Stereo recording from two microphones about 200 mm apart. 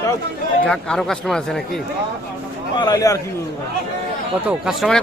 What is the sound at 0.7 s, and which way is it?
Speech, 5° left (ahead or behind).